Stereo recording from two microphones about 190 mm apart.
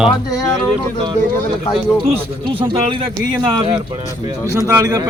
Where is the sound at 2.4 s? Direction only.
30° right (ahead or behind).